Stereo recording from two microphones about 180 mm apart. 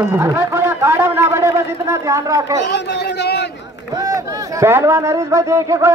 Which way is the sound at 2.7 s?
65° left (ahead or behind).